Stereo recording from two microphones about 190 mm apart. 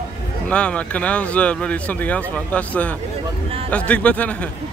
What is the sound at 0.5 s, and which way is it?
Speech, 5° left (ahead or behind).